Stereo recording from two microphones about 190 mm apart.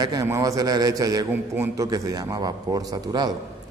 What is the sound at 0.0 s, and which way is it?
A man's voice, 20° right (ahead or behind).